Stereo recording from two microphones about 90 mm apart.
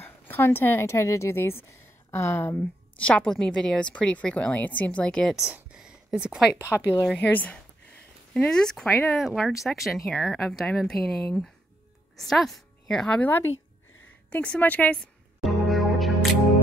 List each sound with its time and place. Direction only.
0.0 s a woman's voice: 25° left (ahead or behind)
3.0 s a woman's voice: 15° left (ahead or behind)
5.5 s a sound: 10° right (ahead or behind)
6.6 s a woman's voice: 25° left (ahead or behind); by 13.2 s 5° left (ahead or behind)
13.2 s a woman's voice: 20° left (ahead or behind)
15.0 s music: centre (ahead or behind)